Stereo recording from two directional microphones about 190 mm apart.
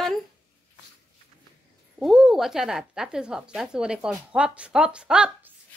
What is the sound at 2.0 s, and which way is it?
Speech, centre (ahead or behind).